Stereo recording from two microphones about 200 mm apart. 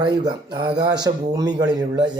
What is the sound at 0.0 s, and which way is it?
Speech, 20° right (ahead or behind).